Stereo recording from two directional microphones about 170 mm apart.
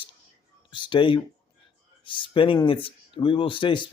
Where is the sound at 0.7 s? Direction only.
30° left (ahead or behind).